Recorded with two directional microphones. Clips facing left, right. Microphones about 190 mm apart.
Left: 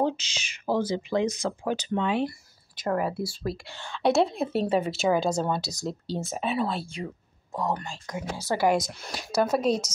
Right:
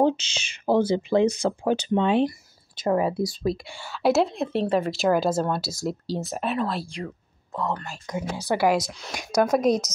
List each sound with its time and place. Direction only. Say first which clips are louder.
0.0 s speech: right 5 dB; 25° right (ahead or behind); by 6.8 s centre (ahead or behind)
7.1 s a sound: right 1 dB; 15° left (ahead or behind)
8.1 s speech: right 3 dB; 20° right (ahead or behind)